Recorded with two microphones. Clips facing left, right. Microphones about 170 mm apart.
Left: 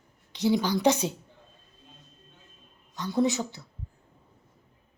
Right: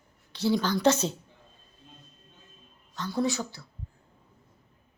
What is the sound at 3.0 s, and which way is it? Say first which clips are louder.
Speech: left 3 dB; 20° left (ahead or behind).